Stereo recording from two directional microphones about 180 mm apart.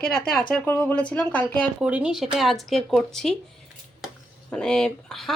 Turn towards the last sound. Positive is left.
turn(degrees=0)  # may be behind; listen again after turning